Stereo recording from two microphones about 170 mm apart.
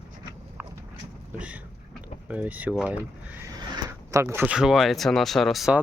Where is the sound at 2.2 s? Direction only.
10° right (ahead or behind).